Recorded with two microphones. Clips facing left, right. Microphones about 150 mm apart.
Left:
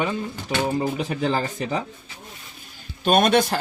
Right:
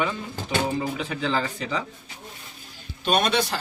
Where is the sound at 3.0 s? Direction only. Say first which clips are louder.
Left 5 dB; 50° left (ahead or behind).